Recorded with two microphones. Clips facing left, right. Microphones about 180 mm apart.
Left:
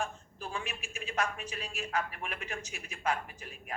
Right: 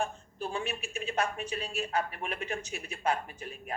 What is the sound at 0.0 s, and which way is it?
Speech, 30° right (ahead or behind).